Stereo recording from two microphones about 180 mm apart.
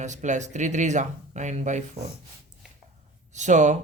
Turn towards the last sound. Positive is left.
turn(degrees=-40)  # may be behind; listen again after turning